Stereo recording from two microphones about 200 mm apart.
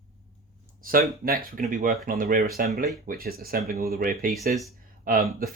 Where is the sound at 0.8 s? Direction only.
45° right (ahead or behind).